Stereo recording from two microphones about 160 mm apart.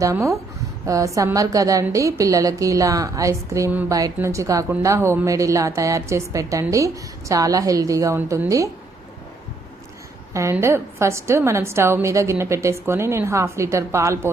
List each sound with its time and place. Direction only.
0.0 s a woman's voice: 20° right (ahead or behind)
10.3 s a woman's voice: 15° right (ahead or behind)